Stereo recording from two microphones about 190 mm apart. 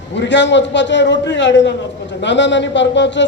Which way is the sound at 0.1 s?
70° left (ahead or behind).